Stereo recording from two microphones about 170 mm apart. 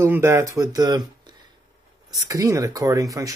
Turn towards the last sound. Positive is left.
turn(degrees=-20)  # may be behind; listen again after turning